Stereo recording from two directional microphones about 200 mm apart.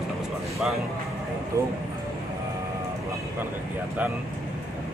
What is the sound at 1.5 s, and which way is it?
Speech, 15° right (ahead or behind).